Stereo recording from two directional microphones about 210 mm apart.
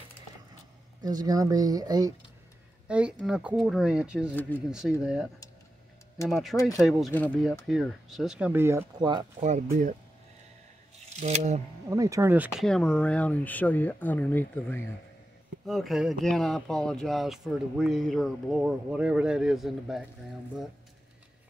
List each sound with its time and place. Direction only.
1.0 s speech: 15° right (ahead or behind)
2.9 s speech: 5° right (ahead or behind)
4.4 s speech: 10° left (ahead or behind)
4.6 s speech: 5° right (ahead or behind)
9.0 s speech: 20° right (ahead or behind)
11.1 s speech: 30° right (ahead or behind)
11.9 s speech: 15° right (ahead or behind)